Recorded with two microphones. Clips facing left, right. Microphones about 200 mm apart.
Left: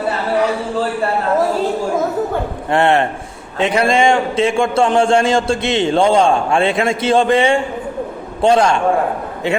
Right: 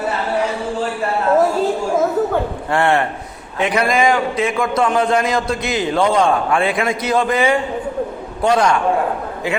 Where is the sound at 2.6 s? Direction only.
25° left (ahead or behind).